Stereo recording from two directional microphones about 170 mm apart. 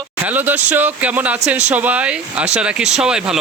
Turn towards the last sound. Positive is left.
turn(degrees=-5)  # may be behind; listen again after turning